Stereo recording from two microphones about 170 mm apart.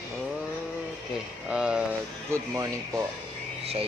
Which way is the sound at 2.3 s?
15° right (ahead or behind).